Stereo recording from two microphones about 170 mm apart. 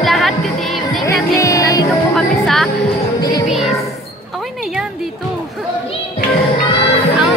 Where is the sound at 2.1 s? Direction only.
Centre (ahead or behind).